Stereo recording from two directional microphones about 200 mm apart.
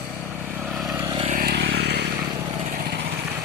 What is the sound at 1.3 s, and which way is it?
Vehicle, 45° right (ahead or behind).